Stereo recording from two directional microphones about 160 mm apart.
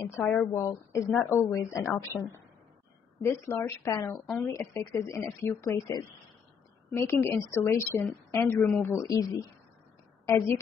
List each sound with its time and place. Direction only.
0.0 s speech: 15° left (ahead or behind)